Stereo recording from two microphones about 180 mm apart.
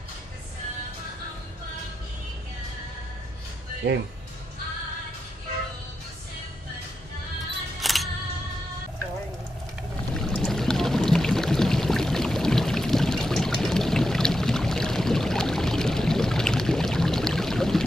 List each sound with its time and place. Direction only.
3.8 s speech: 65° right (ahead or behind)
7.8 s music: centre (ahead or behind)
10.1 s a sound: 5° left (ahead or behind)